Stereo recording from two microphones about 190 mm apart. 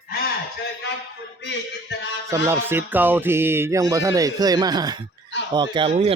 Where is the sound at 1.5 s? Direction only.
70° left (ahead or behind).